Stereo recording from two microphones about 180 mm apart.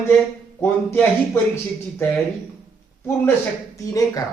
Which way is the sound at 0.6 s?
10° left (ahead or behind).